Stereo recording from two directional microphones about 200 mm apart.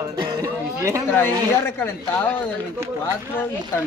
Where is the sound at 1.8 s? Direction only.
10° left (ahead or behind).